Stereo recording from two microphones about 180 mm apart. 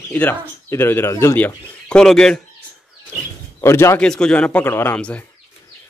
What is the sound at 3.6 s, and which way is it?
Speech, 15° left (ahead or behind).